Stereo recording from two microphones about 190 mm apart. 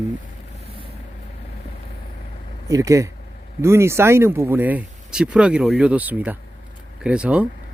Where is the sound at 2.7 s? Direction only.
15° right (ahead or behind).